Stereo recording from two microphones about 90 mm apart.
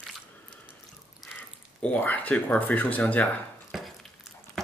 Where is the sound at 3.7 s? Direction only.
Centre (ahead or behind).